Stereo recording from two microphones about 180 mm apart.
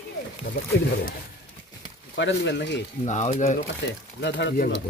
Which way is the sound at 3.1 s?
40° left (ahead or behind).